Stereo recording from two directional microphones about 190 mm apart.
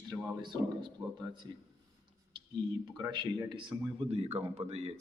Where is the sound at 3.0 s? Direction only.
20° right (ahead or behind).